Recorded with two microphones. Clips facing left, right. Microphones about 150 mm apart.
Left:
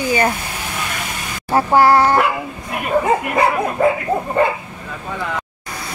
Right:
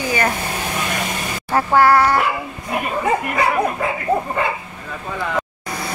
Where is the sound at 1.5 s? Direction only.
20° left (ahead or behind).